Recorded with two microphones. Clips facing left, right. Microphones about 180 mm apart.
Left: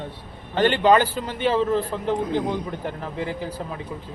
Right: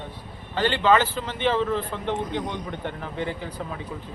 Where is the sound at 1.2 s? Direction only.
40° left (ahead or behind).